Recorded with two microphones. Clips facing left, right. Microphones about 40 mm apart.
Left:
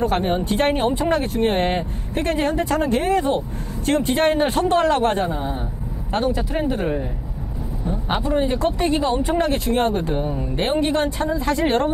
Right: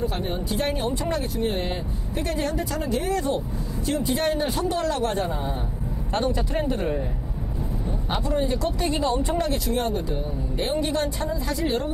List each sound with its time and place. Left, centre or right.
0.0 s speech: left
3.8 s speech: left
6.2 s speech: centre
7.8 s speech: left
9.5 s speech: left